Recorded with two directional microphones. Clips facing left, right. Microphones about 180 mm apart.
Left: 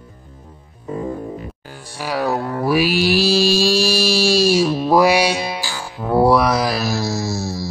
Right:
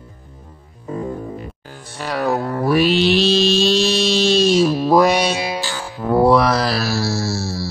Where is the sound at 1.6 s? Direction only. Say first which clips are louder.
Even; 10° left (ahead or behind).